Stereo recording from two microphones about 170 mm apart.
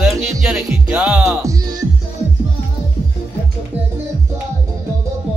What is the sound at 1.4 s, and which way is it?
Music, 25° right (ahead or behind).